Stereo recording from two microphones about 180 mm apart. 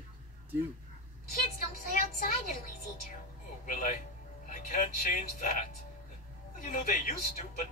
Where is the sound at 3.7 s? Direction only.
45° left (ahead or behind).